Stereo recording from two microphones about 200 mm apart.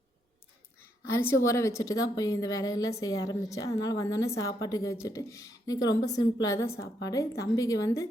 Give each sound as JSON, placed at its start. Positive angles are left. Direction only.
{"t": 1.0, "sound": "a woman's voice", "side_deg": 15}